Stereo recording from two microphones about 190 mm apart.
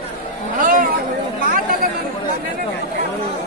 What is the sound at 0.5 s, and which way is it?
Chatter, 45° right (ahead or behind).